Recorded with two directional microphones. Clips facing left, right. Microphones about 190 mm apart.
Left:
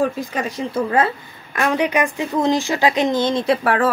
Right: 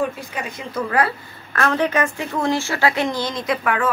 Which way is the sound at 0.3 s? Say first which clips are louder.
Left 6 dB; 40° left (ahead or behind).